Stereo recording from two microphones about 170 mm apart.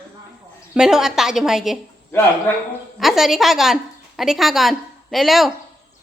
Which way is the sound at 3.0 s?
Centre (ahead or behind).